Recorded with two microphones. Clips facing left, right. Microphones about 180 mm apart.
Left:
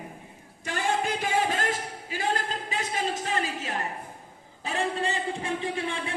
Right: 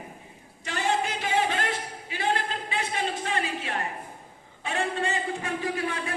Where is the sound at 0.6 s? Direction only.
50° left (ahead or behind).